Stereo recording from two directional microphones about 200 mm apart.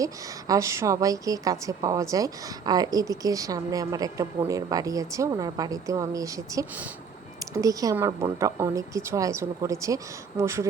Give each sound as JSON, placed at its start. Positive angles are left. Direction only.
{"t": 0.0, "sound": "a woman's voice", "side_deg": -15}